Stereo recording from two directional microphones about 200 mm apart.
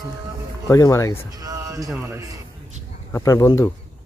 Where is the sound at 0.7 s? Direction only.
15° left (ahead or behind).